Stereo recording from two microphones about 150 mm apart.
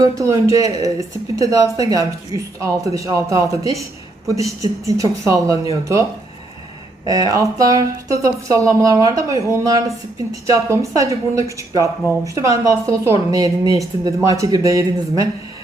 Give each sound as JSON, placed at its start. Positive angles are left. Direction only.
{"t": 0.0, "sound": "a woman's voice", "side_deg": -20}
{"t": 7.0, "sound": "a woman's voice", "side_deg": -25}